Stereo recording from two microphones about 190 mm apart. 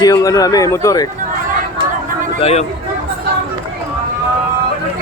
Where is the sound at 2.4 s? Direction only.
30° left (ahead or behind).